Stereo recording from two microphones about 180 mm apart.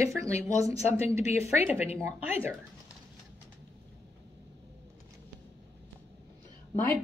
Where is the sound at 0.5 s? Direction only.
35° left (ahead or behind).